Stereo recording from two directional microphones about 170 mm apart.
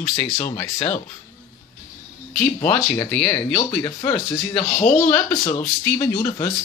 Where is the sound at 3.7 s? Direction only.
15° left (ahead or behind).